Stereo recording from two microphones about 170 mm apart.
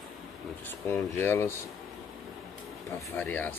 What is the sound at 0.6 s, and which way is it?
Speech, 15° left (ahead or behind).